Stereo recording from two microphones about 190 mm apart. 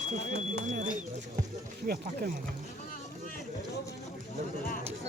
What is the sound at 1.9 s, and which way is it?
Speech, 50° right (ahead or behind).